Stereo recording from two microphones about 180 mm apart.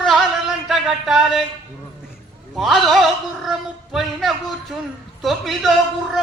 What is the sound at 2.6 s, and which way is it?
Speech, centre (ahead or behind).